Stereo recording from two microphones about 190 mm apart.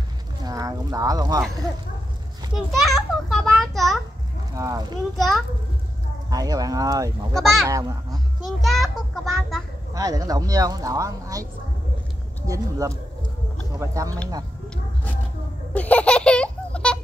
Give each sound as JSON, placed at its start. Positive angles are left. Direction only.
{"t": 0.4, "sound": "speech", "side_deg": -20}
{"t": 2.5, "sound": "a child's voice", "side_deg": 0}
{"t": 4.6, "sound": "speech", "side_deg": -20}
{"t": 5.1, "sound": "a child's voice", "side_deg": 0}
{"t": 6.3, "sound": "speech", "side_deg": -20}
{"t": 8.5, "sound": "a child's voice", "side_deg": 0}
{"t": 9.9, "sound": "speech", "side_deg": -20}
{"t": 12.4, "sound": "a man's voice", "side_deg": -15}
{"t": 15.7, "sound": "baby laughter", "side_deg": 10}